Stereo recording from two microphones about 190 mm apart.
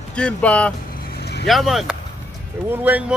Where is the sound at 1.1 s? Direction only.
60° left (ahead or behind).